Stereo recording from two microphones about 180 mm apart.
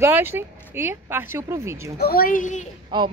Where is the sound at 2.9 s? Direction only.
25° right (ahead or behind).